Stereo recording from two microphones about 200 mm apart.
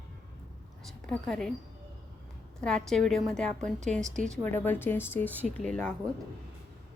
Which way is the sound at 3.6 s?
35° right (ahead or behind).